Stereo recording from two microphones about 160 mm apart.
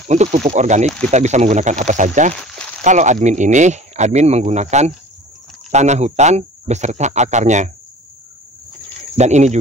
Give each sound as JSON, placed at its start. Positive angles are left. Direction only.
{"t": 0.1, "sound": "speech", "side_deg": -45}
{"t": 9.1, "sound": "speech", "side_deg": -45}